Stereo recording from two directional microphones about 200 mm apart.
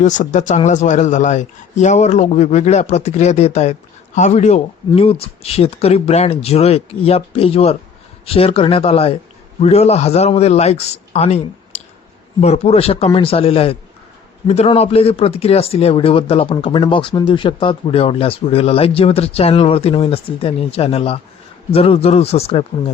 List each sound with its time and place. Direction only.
0.0 s a man's voice: 40° left (ahead or behind)